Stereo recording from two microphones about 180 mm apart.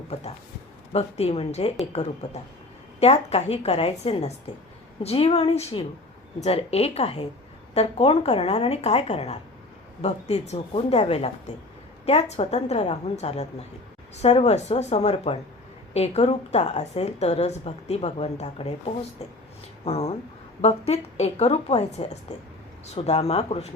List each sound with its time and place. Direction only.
0.1 s a woman's voice: 35° left (ahead or behind)